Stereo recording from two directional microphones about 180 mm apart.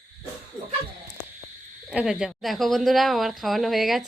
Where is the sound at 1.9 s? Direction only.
5° right (ahead or behind).